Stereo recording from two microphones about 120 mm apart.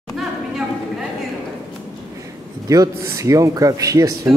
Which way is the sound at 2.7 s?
30° right (ahead or behind).